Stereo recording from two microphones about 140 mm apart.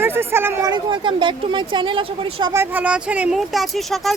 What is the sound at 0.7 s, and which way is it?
Speech, 35° right (ahead or behind).